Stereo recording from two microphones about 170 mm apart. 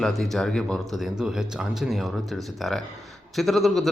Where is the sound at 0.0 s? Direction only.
Centre (ahead or behind).